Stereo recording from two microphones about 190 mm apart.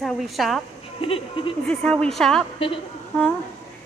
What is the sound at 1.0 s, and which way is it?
Speech, 30° left (ahead or behind).